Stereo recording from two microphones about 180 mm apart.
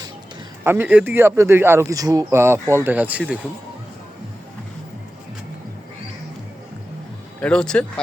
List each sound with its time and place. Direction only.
0.6 s speech: 10° right (ahead or behind)
7.4 s speech: 5° left (ahead or behind)